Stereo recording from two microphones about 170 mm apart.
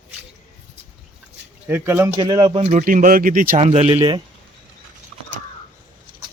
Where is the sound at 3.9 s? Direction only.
25° right (ahead or behind).